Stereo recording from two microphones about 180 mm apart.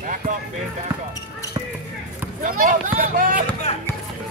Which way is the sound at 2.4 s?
50° right (ahead or behind).